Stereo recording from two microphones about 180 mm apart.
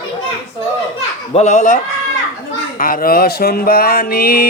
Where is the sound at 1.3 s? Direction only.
40° left (ahead or behind).